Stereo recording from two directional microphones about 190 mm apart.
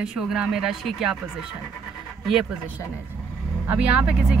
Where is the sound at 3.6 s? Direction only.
10° right (ahead or behind).